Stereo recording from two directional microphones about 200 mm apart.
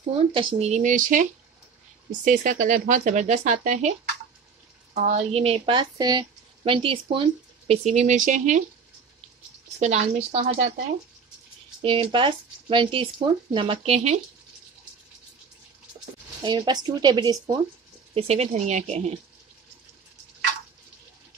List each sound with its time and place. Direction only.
0.1 s speech: 25° right (ahead or behind)
4.9 s speech: 35° right (ahead or behind)
9.8 s speech: 35° right (ahead or behind)
11.8 s speech: 25° right (ahead or behind)
16.4 s speech: 20° right (ahead or behind)
18.1 s speech: 30° right (ahead or behind)